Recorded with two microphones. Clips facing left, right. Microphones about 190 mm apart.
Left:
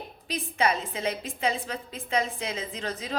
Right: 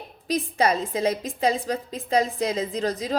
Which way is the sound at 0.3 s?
40° right (ahead or behind).